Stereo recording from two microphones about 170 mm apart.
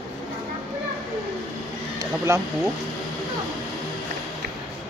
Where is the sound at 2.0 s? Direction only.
20° right (ahead or behind).